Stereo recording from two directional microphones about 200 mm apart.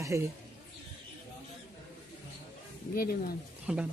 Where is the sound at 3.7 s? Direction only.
5° right (ahead or behind).